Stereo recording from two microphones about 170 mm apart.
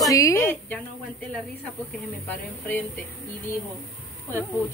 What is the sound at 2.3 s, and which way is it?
Speech, 10° left (ahead or behind).